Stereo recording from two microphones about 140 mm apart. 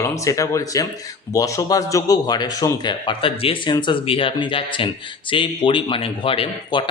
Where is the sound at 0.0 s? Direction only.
20° left (ahead or behind).